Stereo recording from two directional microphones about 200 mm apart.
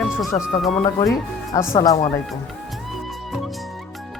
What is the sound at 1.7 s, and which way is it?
Speech, 20° left (ahead or behind).